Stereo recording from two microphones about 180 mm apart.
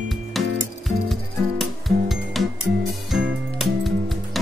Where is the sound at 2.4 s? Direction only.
Centre (ahead or behind).